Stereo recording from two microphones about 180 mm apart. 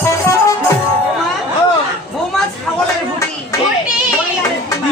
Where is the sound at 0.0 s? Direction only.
15° left (ahead or behind).